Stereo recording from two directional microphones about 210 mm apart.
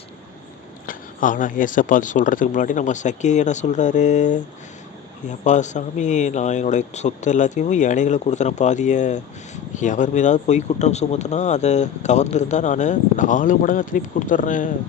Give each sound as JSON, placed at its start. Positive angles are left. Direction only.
{"t": 0.9, "sound": "speech", "side_deg": 40}